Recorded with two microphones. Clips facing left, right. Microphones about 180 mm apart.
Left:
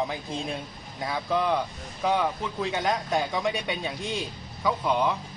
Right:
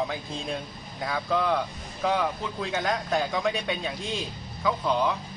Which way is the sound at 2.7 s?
15° left (ahead or behind).